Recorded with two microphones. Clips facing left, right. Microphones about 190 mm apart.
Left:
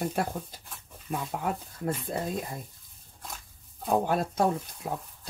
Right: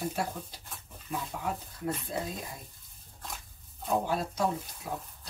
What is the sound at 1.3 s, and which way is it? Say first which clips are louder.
Speech: left 4 dB; 55° left (ahead or behind).